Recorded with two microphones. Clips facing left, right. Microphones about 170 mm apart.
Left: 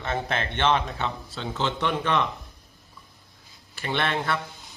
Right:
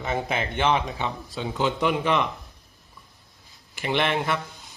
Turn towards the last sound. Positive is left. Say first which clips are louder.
# right 2 dB
turn(degrees=-20)  # may be behind; listen again after turning